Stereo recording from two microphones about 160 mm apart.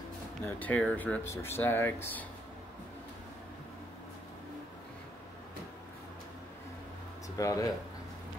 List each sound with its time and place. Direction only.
0.5 s speech: 10° left (ahead or behind)
7.3 s speech: 20° left (ahead or behind)